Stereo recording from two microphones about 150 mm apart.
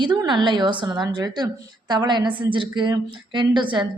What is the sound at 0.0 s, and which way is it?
A woman's voice, 30° right (ahead or behind).